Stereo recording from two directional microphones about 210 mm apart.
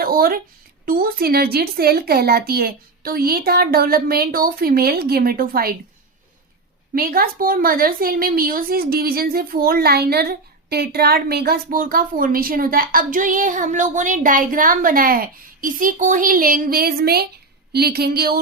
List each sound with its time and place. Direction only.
0.0 s a sound: 45° right (ahead or behind)
0.9 s a woman's voice: 45° right (ahead or behind)
6.9 s a woman's voice: 45° right (ahead or behind)